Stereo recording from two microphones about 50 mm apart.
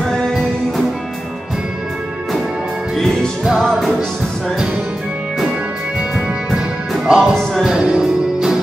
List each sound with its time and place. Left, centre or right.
0.0 s music: centre
3.6 s music: centre
6.1 s music: centre